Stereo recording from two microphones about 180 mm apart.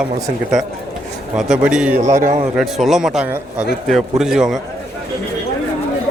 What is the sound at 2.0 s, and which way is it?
Speech, 40° right (ahead or behind).